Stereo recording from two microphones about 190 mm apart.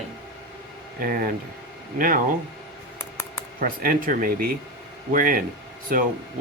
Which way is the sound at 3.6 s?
45° right (ahead or behind).